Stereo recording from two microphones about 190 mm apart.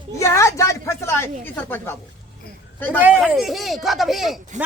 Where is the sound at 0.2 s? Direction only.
15° left (ahead or behind).